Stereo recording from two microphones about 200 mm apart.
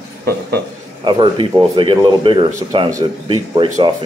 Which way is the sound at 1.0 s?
25° right (ahead or behind).